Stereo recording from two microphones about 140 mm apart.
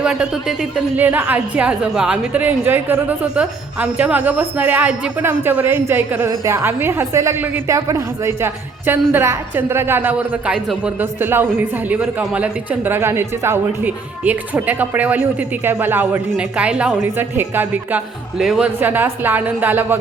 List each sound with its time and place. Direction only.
0.0 s a woman's voice: 5° right (ahead or behind)
18.8 s a woman's voice: 15° right (ahead or behind)